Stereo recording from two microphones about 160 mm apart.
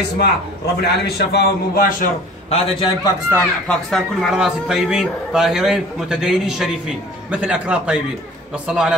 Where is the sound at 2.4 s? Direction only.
40° left (ahead or behind).